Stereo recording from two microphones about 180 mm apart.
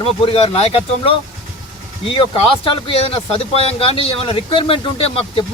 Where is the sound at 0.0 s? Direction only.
35° left (ahead or behind).